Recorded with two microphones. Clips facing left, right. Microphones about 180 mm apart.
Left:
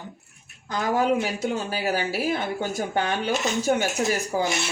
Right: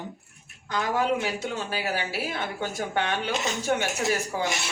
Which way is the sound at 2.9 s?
40° left (ahead or behind).